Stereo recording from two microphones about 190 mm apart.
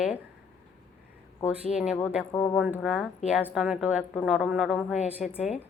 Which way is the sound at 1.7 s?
5° right (ahead or behind).